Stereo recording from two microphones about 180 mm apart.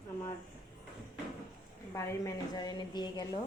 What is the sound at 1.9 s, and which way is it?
A woman's voice, 20° left (ahead or behind).